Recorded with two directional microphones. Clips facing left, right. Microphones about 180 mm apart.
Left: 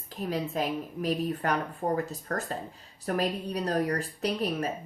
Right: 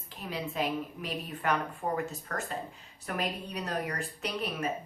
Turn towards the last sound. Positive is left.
turn(degrees=35)  # may be behind; listen again after turning